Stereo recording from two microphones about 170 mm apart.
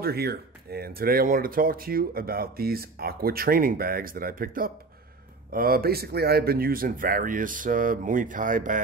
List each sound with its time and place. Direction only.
0.0 s speech: 65° right (ahead or behind); by 8.8 s 50° right (ahead or behind)